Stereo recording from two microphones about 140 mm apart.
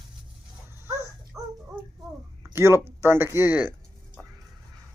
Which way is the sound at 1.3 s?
20° right (ahead or behind).